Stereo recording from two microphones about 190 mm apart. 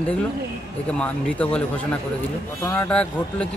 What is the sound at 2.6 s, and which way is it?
Speech, 5° left (ahead or behind).